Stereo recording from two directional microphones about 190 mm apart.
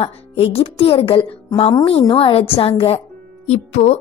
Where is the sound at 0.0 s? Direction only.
30° left (ahead or behind).